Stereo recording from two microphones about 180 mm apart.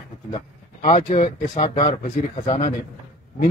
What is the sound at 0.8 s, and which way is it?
Speech, 45° left (ahead or behind).